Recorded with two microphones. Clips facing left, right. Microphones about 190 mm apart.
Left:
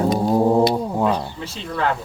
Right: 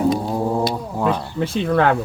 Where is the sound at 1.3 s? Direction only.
55° right (ahead or behind).